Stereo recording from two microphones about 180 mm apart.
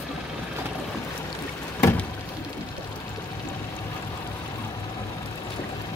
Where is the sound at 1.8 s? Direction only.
15° left (ahead or behind).